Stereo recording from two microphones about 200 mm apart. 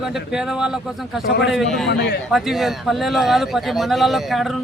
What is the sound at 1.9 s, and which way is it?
Speech, 55° left (ahead or behind).